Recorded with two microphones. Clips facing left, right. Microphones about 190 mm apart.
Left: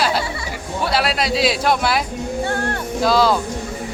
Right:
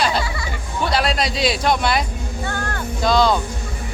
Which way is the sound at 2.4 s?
30° left (ahead or behind).